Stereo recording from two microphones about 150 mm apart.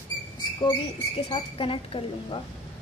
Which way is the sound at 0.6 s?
35° left (ahead or behind).